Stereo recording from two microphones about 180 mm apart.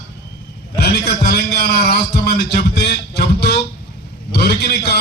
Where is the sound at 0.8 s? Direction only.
60° left (ahead or behind).